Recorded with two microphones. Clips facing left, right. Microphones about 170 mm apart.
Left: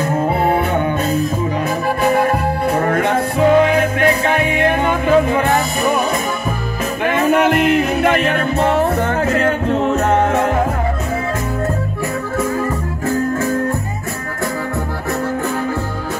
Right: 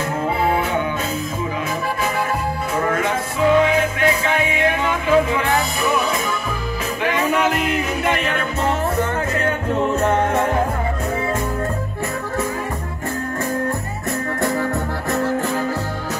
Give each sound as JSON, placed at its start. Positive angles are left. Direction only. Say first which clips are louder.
{"t": 2.7, "sound": "music", "louder": "left 3 dB", "side_deg": 55}
{"t": 7.1, "sound": "music", "louder": "left 5 dB", "side_deg": 55}